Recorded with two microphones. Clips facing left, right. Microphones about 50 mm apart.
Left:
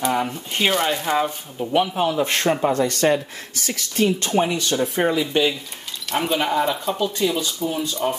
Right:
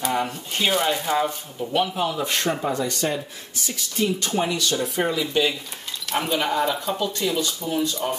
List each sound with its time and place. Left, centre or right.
0.0 s a sound: centre
0.7 s speech: centre
1.1 s speech: centre
2.0 s speech: left
2.7 s speech: left
4.4 s speech: left
6.0 s speech: centre